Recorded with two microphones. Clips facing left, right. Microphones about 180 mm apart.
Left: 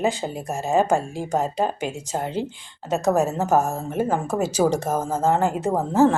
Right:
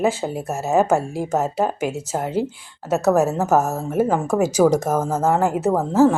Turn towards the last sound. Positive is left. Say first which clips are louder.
# right 3 dB
turn(degrees=15)  # may be behind; listen again after turning